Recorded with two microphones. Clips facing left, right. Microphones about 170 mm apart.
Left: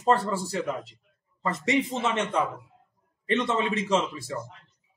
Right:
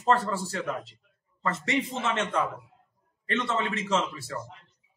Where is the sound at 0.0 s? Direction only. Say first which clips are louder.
Left 1 dB; 15° left (ahead or behind).